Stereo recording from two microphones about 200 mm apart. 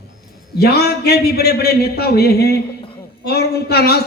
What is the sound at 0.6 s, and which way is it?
A man's voice, 50° left (ahead or behind).